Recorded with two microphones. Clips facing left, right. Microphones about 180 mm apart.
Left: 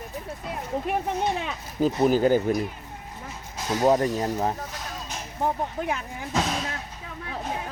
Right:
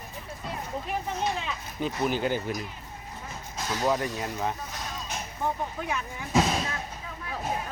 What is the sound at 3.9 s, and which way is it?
Speech, 40° left (ahead or behind).